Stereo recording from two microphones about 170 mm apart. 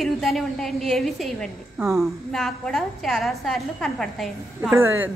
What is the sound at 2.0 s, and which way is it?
A woman's voice, centre (ahead or behind).